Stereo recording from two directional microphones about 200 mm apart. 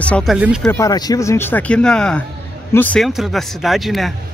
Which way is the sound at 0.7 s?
15° left (ahead or behind).